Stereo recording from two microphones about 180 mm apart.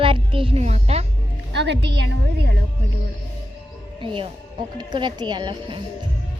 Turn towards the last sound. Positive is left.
turn(degrees=-25)  # may be behind; listen again after turning